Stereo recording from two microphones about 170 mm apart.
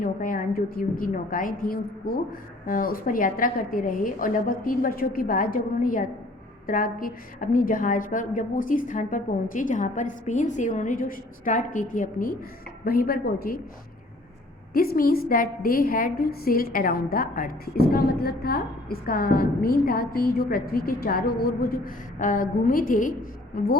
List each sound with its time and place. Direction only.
0.0 s a woman's voice: 55° left (ahead or behind)
14.7 s a woman's voice: 60° left (ahead or behind)